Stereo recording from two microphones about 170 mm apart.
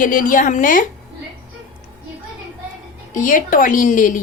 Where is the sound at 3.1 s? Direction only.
50° left (ahead or behind).